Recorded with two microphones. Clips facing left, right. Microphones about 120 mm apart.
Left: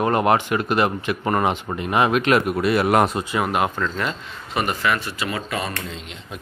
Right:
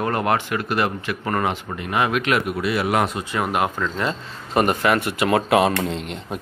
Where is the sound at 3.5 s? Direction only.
Centre (ahead or behind).